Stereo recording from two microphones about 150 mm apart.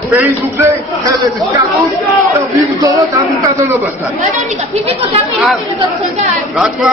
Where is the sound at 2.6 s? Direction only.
25° right (ahead or behind).